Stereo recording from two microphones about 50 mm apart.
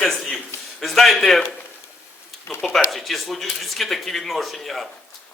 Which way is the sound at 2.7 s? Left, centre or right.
Centre.